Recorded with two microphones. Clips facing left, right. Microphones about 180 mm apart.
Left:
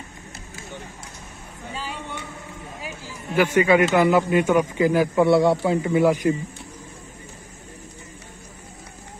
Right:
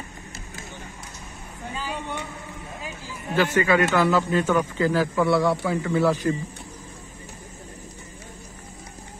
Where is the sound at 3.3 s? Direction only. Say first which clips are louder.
Left 3 dB; 15° left (ahead or behind).